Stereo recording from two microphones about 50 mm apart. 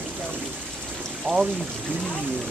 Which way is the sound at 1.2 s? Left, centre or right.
Centre.